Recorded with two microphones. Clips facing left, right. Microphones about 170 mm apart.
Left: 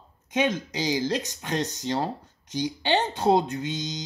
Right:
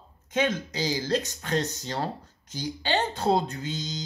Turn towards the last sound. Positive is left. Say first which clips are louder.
# left 3 dB
turn(degrees=20)  # may be behind; listen again after turning